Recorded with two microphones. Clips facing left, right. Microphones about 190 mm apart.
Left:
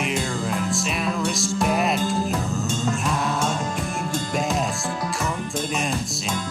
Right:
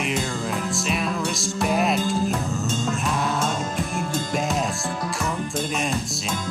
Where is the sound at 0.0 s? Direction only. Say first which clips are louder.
Left 1 dB; centre (ahead or behind).